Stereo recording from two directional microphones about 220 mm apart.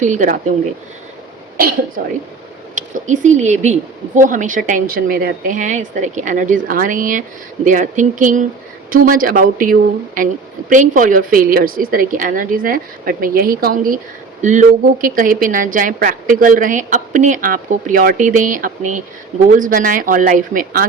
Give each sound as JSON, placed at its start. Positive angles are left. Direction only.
{"t": 0.0, "sound": "speech", "side_deg": -35}
{"t": 2.7, "sound": "speech", "side_deg": -35}